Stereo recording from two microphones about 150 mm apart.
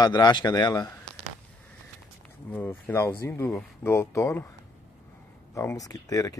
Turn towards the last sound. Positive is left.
turn(degrees=25)  # may be behind; listen again after turning